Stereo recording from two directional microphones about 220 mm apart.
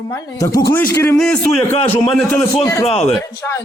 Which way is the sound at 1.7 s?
25° left (ahead or behind).